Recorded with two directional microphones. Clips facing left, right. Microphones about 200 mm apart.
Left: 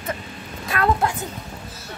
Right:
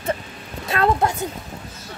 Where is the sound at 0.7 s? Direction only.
25° right (ahead or behind).